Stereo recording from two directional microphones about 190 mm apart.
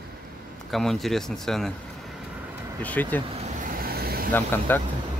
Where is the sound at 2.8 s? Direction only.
10° left (ahead or behind).